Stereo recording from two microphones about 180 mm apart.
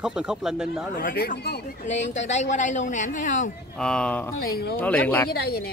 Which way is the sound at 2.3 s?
40° left (ahead or behind).